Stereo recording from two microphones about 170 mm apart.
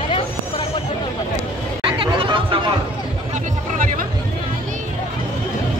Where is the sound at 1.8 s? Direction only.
30° right (ahead or behind).